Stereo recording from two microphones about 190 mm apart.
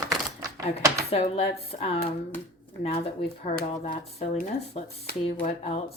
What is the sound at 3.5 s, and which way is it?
A woman's voice, 40° left (ahead or behind).